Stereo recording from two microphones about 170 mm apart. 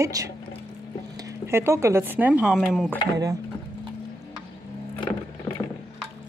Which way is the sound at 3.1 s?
20° right (ahead or behind).